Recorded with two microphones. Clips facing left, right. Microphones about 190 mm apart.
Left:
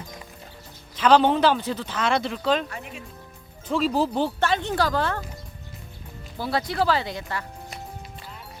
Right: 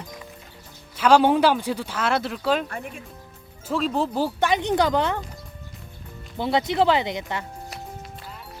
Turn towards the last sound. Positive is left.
turn(degrees=-20)  # may be behind; listen again after turning